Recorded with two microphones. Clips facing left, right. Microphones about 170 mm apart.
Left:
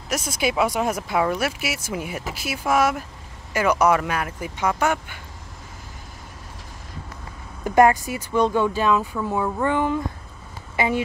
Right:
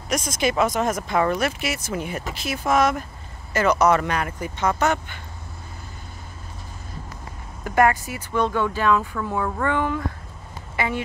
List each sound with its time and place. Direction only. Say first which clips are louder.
0.1 s speech: right 1 dB; 5° left (ahead or behind)
7.6 s speech: left 3 dB; 20° left (ahead or behind)